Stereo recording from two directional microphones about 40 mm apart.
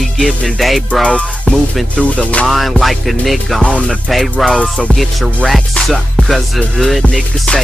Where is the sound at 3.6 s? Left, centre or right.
Left.